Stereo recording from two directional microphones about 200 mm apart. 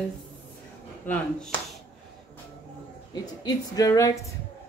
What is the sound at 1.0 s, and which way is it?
Speech, 5° left (ahead or behind).